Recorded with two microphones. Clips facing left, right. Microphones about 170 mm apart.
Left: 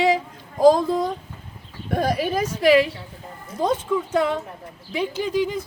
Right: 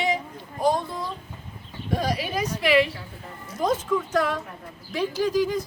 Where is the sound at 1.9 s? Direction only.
55° left (ahead or behind).